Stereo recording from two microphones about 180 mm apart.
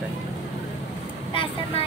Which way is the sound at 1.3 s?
30° left (ahead or behind).